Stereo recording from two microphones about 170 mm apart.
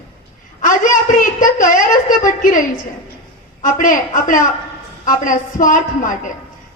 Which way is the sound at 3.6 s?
50° left (ahead or behind).